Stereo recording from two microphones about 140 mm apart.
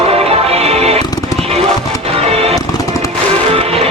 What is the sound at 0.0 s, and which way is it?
Music, 45° right (ahead or behind).